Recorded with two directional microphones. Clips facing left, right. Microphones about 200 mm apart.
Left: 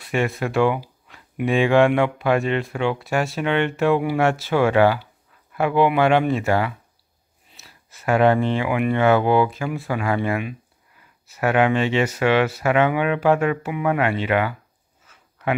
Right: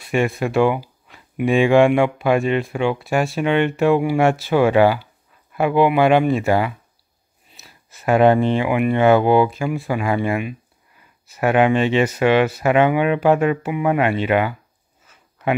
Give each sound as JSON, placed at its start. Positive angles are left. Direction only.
{"t": 0.0, "sound": "speech", "side_deg": -15}
{"t": 7.9, "sound": "speech", "side_deg": -20}